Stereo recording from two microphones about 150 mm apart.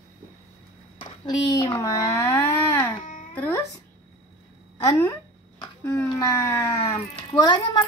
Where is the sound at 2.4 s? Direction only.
15° left (ahead or behind).